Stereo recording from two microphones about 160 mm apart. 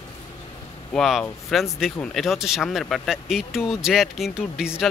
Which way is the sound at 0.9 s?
Centre (ahead or behind).